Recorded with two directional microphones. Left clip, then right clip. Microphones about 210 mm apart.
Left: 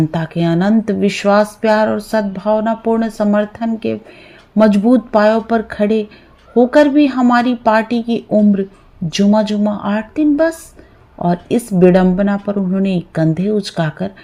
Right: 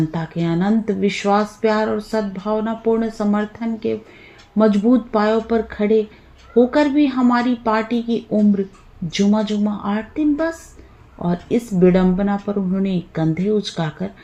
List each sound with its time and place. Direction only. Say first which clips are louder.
0.1 s speech: left 6 dB; 50° left (ahead or behind)